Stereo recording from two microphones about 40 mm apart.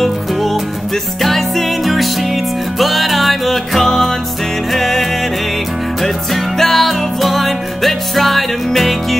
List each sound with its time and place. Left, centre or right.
0.0 s music: centre
6.6 s music: centre